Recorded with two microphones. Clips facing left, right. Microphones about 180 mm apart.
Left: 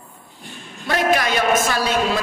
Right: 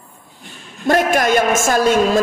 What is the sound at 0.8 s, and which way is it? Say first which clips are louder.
A man's voice: right 4 dB; 45° right (ahead or behind).